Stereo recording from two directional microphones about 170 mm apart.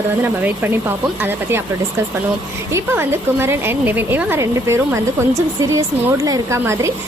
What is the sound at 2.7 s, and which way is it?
Speech, 15° right (ahead or behind).